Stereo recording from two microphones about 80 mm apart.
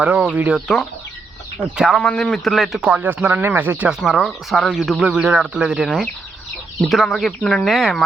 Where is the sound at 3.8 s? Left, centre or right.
Centre.